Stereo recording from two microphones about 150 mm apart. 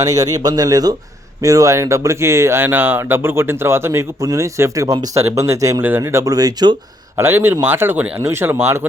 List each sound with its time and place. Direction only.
0.0 s speech: 25° right (ahead or behind)